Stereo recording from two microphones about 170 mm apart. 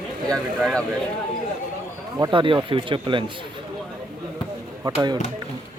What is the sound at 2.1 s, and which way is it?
Speech, 25° right (ahead or behind).